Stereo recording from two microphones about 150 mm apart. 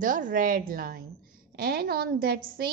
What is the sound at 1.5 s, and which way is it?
A woman's voice, 90° right.